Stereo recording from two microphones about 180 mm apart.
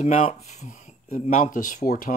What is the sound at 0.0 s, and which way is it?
Speech, 45° left (ahead or behind).